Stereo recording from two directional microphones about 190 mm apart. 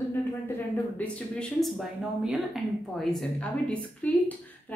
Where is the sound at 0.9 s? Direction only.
5° left (ahead or behind).